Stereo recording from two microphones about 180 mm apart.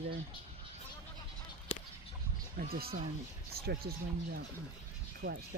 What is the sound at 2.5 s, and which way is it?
Speech, 55° right (ahead or behind).